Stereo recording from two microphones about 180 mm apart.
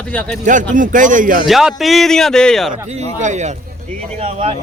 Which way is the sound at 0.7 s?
45° right (ahead or behind).